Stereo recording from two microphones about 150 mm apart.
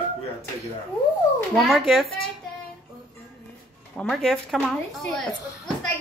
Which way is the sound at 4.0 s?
Centre (ahead or behind).